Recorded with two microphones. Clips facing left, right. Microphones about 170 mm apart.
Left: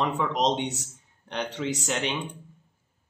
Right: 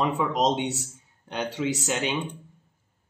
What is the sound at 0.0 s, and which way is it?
Speech, 5° right (ahead or behind).